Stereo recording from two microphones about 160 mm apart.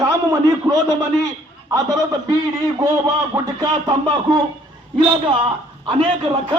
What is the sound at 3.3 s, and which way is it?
A man's voice, 25° right (ahead or behind).